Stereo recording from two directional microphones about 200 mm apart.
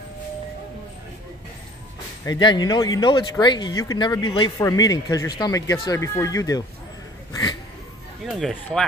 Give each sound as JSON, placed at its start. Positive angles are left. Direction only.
{"t": 2.2, "sound": "speech", "side_deg": 20}
{"t": 8.3, "sound": "speech", "side_deg": 0}